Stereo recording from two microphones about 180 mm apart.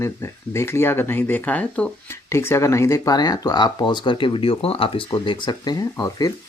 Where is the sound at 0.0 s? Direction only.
15° left (ahead or behind).